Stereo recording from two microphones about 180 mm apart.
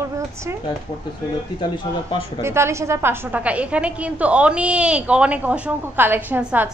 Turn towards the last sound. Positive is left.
turn(degrees=-10)  # may be behind; listen again after turning